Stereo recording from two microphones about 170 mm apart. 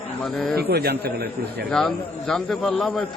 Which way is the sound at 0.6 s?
65° right (ahead or behind).